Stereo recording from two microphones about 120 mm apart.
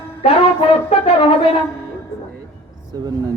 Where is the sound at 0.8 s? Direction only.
55° left (ahead or behind).